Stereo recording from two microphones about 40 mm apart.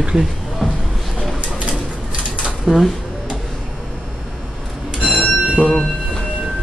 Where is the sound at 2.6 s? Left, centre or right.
Centre.